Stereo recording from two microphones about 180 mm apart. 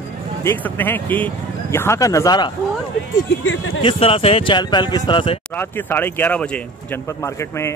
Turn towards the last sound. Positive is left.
turn(degrees=15)  # may be behind; listen again after turning